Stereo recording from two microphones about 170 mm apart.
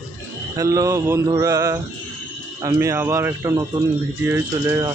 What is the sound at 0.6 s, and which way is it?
Mantra, 20° right (ahead or behind).